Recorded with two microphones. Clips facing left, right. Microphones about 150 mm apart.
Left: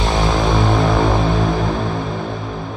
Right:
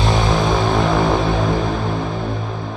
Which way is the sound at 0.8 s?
20° left (ahead or behind).